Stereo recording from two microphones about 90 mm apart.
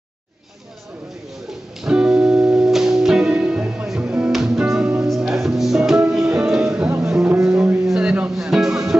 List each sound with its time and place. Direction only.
1.8 s music: 5° right (ahead or behind)